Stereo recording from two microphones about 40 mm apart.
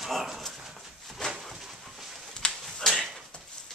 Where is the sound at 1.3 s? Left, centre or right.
Centre.